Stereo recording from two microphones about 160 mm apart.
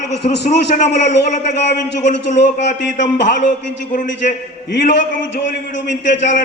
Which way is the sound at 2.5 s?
50° left (ahead or behind).